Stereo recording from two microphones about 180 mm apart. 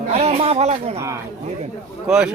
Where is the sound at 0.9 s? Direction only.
15° right (ahead or behind).